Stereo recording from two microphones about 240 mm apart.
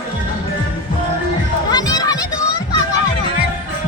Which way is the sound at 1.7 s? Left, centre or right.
Centre.